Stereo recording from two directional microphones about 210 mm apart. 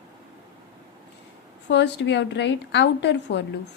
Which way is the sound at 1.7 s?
55° left (ahead or behind).